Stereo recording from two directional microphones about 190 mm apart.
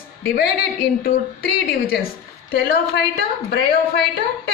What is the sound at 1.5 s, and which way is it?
A woman's voice, 55° left (ahead or behind).